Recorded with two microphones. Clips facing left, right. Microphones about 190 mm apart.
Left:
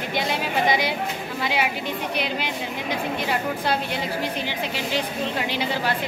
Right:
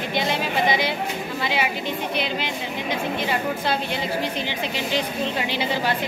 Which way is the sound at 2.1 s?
10° left (ahead or behind).